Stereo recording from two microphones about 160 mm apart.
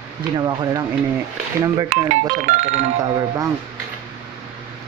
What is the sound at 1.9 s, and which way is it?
Speech, 50° right (ahead or behind).